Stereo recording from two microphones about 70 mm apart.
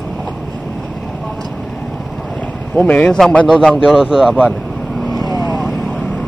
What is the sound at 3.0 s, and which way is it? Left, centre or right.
Speech, centre.